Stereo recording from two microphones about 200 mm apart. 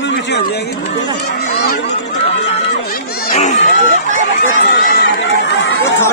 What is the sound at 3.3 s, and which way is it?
Speech, 35° left (ahead or behind).